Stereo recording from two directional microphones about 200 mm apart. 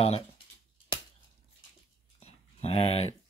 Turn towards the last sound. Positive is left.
turn(degrees=30)  # may be behind; listen again after turning